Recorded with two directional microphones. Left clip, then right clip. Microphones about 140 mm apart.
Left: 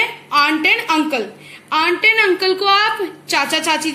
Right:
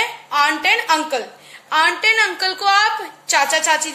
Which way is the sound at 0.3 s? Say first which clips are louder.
Left 2 dB; 40° right (ahead or behind).